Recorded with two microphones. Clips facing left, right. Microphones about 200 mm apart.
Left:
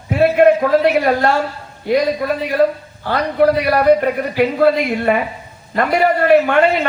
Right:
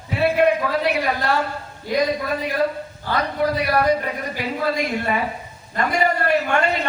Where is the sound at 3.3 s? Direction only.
60° left (ahead or behind).